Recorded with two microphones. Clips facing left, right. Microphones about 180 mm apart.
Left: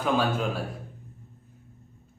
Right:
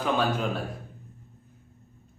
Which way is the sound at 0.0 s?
Centre (ahead or behind).